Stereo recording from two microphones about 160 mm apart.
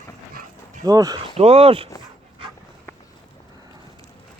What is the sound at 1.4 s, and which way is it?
Speech, 40° right (ahead or behind).